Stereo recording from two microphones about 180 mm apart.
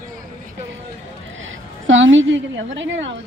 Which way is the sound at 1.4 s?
90° right.